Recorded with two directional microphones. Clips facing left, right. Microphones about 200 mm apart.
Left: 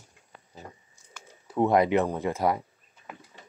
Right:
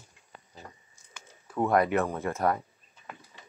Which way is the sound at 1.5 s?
20° left (ahead or behind).